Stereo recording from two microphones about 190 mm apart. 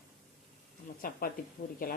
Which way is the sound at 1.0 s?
45° left (ahead or behind).